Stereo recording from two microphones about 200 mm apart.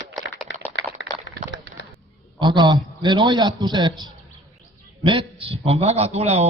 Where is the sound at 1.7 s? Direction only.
40° right (ahead or behind).